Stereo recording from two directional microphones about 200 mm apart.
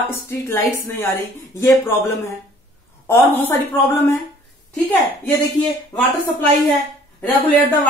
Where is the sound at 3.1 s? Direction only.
10° left (ahead or behind).